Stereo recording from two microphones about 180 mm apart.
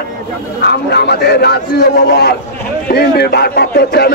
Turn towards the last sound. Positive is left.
turn(degrees=60)  # may be behind; listen again after turning